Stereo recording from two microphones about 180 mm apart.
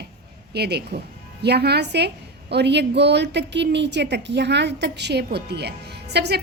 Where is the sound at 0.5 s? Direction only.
65° right (ahead or behind).